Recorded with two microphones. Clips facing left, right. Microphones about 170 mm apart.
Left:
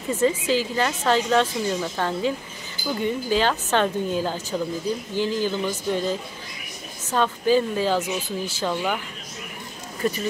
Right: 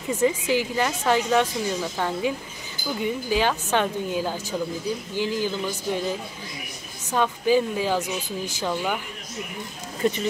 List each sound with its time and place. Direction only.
0.1 s a woman's voice: 15° right (ahead or behind)
7.1 s a woman's voice: 15° right (ahead or behind)
10.0 s speech: 25° right (ahead or behind)